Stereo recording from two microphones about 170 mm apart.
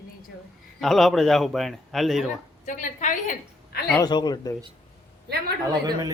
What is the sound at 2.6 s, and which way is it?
Speech, 50° left (ahead or behind).